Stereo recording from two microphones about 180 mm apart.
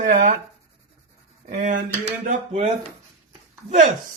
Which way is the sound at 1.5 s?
45° right (ahead or behind).